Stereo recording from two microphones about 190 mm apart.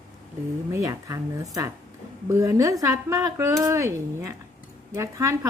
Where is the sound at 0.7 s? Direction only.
15° right (ahead or behind).